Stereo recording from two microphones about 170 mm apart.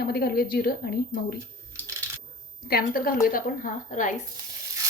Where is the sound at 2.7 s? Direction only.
60° left (ahead or behind).